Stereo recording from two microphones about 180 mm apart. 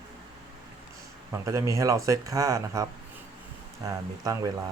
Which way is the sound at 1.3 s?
15° right (ahead or behind).